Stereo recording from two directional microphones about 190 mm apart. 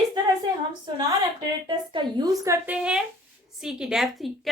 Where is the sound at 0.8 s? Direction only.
25° right (ahead or behind).